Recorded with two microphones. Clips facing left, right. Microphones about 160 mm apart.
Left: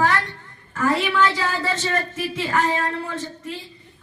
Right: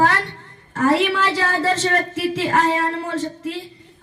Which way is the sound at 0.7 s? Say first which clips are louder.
Right 4 dB; 40° right (ahead or behind).